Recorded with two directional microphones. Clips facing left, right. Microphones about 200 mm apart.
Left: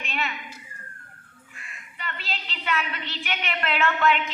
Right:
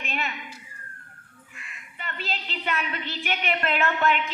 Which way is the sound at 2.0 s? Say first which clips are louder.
Right 2 dB; 45° right (ahead or behind).